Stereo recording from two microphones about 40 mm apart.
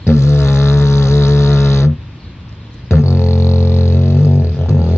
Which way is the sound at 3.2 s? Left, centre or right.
Left.